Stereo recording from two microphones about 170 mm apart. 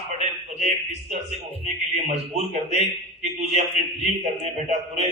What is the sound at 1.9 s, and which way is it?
A man's voice, 40° right (ahead or behind).